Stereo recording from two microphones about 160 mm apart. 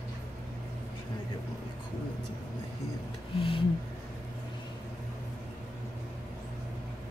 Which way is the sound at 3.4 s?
35° left (ahead or behind).